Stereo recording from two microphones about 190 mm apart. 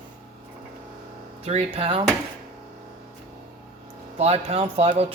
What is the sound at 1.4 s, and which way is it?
Speech, 35° right (ahead or behind).